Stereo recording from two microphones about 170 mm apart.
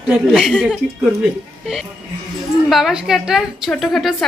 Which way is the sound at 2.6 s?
Centre (ahead or behind).